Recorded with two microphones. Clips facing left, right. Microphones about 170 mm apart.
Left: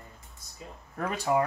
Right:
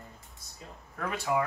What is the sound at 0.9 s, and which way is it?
Speech, 35° left (ahead or behind).